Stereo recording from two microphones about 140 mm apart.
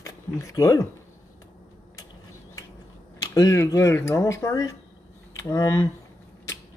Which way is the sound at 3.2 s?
25° left (ahead or behind).